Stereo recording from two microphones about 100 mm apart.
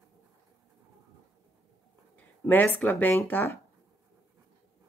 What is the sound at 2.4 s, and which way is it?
Speech, 20° left (ahead or behind).